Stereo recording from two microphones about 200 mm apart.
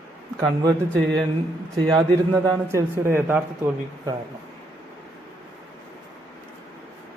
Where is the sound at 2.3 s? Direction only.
15° right (ahead or behind).